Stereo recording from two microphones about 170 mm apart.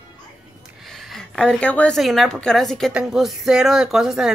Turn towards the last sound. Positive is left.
turn(degrees=0)  # may be behind; listen again after turning